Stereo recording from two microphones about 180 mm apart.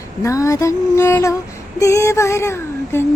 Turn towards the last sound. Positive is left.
turn(degrees=15)  # may be behind; listen again after turning